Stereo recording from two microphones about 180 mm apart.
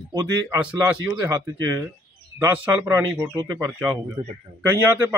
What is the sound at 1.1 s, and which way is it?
Speech, 20° right (ahead or behind).